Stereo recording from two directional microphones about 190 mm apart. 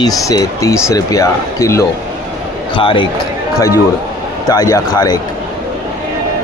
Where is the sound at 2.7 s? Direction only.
25° left (ahead or behind).